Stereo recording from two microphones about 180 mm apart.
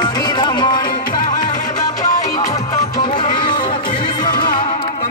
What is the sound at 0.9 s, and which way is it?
Music, 50° left (ahead or behind).